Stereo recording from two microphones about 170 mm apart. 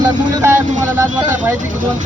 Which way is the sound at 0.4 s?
15° right (ahead or behind).